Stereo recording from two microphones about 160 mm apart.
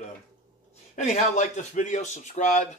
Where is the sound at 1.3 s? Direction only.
50° left (ahead or behind).